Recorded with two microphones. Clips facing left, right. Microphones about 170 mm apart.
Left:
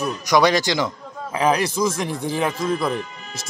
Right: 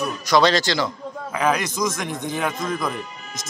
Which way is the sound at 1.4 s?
30° left (ahead or behind).